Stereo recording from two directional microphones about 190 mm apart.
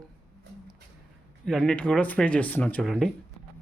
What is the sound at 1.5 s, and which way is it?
Speech, 5° left (ahead or behind).